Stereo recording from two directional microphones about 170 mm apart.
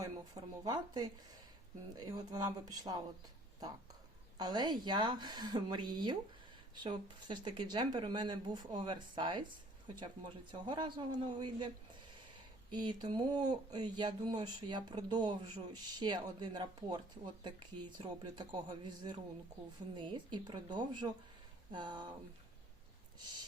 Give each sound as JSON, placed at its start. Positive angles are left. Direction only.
{"t": 0.0, "sound": "speech", "side_deg": -20}
{"t": 4.4, "sound": "speech", "side_deg": -25}
{"t": 12.7, "sound": "speech", "side_deg": -25}
{"t": 23.2, "sound": "a sound", "side_deg": -25}